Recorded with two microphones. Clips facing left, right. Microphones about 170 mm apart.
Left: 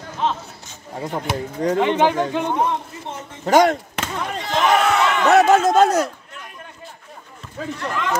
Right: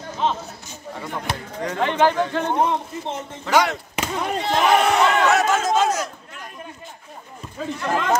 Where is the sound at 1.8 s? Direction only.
10° left (ahead or behind).